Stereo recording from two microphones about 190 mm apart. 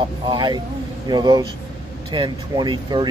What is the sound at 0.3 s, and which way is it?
Speech, 25° right (ahead or behind).